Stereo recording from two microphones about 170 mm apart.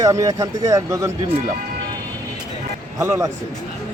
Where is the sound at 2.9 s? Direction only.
15° right (ahead or behind).